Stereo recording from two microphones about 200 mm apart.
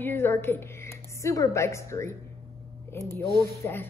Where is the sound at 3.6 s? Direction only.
10° left (ahead or behind).